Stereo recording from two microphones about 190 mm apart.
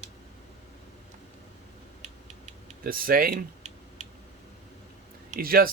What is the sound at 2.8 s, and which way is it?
Typing, 50° right (ahead or behind).